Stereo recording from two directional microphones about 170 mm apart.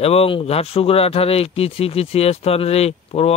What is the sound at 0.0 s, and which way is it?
Speech, 35° left (ahead or behind).